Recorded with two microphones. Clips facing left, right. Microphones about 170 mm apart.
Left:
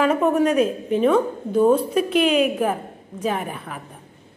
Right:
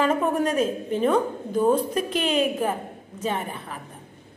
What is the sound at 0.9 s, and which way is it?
A woman's voice, centre (ahead or behind).